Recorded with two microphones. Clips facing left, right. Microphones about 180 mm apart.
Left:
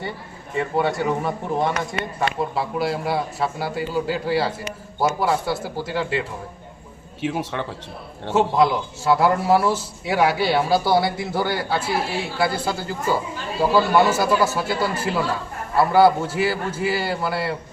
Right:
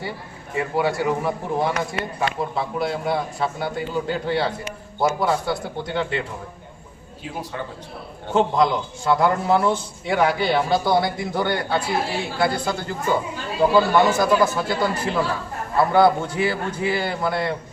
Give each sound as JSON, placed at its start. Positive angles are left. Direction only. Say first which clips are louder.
{"t": 0.5, "sound": "a man's voice", "louder": "even", "side_deg": -5}
{"t": 7.2, "sound": "speech", "louder": "left 6 dB", "side_deg": 80}
{"t": 8.3, "sound": "a man's voice", "louder": "left 1 dB", "side_deg": 5}